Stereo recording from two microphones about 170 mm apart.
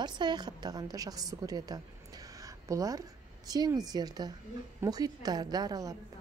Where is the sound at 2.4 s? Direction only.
20° right (ahead or behind).